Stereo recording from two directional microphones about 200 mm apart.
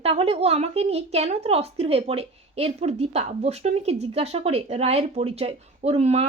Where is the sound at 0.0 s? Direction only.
30° right (ahead or behind).